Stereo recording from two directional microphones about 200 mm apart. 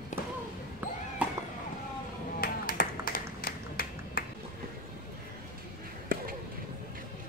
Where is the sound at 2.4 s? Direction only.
45° left (ahead or behind).